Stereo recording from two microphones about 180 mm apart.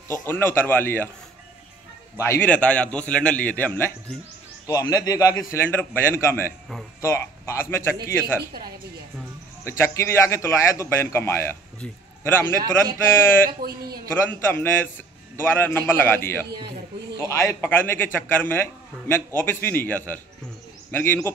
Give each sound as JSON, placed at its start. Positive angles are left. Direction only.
{"t": 0.2, "sound": "a man's voice", "side_deg": 10}
{"t": 2.1, "sound": "a man's voice", "side_deg": 15}
{"t": 9.7, "sound": "a man's voice", "side_deg": 15}
{"t": 13.6, "sound": "a man's voice", "side_deg": -60}
{"t": 14.1, "sound": "a man's voice", "side_deg": 10}